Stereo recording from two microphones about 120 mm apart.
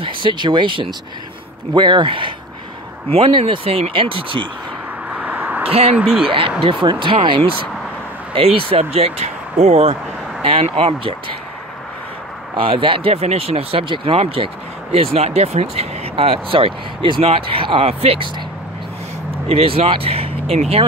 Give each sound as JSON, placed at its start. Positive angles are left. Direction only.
{"t": 0.0, "sound": "speech", "side_deg": -40}
{"t": 5.1, "sound": "a sound", "side_deg": -15}
{"t": 5.7, "sound": "speech", "side_deg": -55}
{"t": 5.9, "sound": "speech", "side_deg": -5}
{"t": 6.2, "sound": "speech", "side_deg": -50}
{"t": 10.4, "sound": "speech", "side_deg": -50}
{"t": 12.5, "sound": "speech", "side_deg": -45}
{"t": 19.4, "sound": "speech", "side_deg": -55}